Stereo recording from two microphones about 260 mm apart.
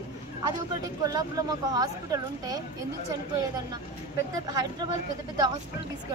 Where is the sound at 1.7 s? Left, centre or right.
Centre.